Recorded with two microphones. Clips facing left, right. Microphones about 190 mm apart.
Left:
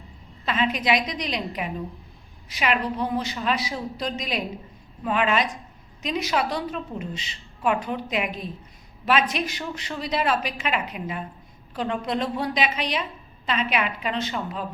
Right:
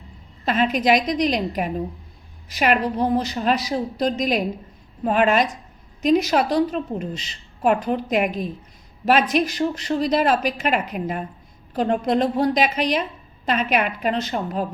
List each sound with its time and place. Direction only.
0.4 s a woman's voice: 45° right (ahead or behind)